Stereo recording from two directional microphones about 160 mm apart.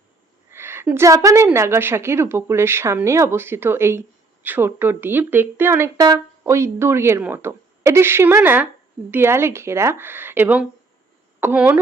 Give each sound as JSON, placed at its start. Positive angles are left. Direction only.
{"t": 0.5, "sound": "a woman's voice", "side_deg": -15}